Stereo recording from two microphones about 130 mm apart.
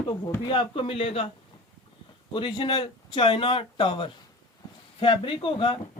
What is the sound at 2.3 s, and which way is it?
Speech, 35° left (ahead or behind).